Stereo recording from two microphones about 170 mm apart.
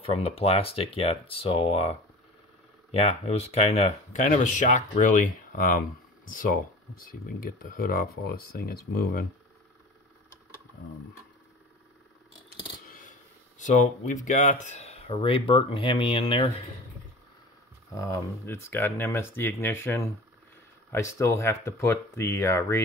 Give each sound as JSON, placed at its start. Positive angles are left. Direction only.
{"t": 0.0, "sound": "speech", "side_deg": 35}
{"t": 12.4, "sound": "coin", "side_deg": 55}
{"t": 13.6, "sound": "speech", "side_deg": 45}
{"t": 17.9, "sound": "speech", "side_deg": 20}